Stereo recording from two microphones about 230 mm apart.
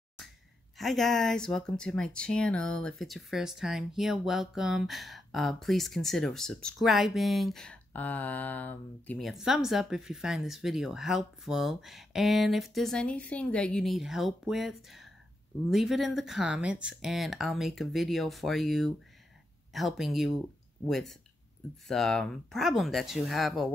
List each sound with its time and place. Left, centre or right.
0.7 s speech: centre